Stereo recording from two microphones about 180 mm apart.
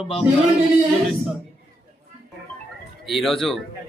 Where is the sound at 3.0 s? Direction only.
Centre (ahead or behind).